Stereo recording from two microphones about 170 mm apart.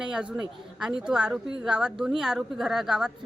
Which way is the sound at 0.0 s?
5° right (ahead or behind).